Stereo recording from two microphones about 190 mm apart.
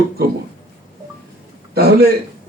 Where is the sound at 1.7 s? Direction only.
55° right (ahead or behind).